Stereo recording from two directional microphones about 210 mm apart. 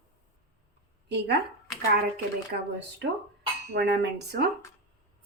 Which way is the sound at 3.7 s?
60° right (ahead or behind).